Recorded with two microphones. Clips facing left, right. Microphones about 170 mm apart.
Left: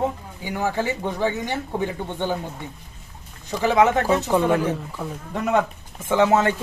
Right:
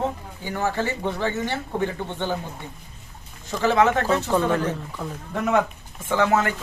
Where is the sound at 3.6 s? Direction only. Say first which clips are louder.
Left 1 dB; 15° left (ahead or behind).